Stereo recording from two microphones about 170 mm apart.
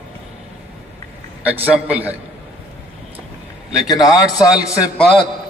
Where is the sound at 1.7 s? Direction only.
5° right (ahead or behind).